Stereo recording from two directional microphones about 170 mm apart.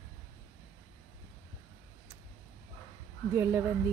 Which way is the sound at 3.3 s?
15° right (ahead or behind).